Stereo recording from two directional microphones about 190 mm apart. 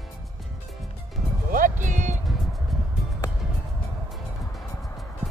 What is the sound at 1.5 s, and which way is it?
Music, 45° right (ahead or behind).